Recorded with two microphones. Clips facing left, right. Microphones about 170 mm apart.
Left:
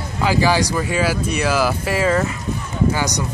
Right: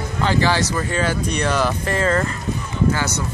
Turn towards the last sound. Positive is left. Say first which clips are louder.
# left 1 dB
turn(degrees=15)  # may be behind; listen again after turning